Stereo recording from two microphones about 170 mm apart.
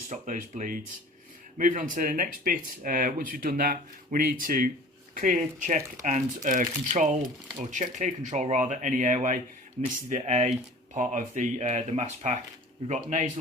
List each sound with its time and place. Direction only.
0.1 s speech: 50° right (ahead or behind)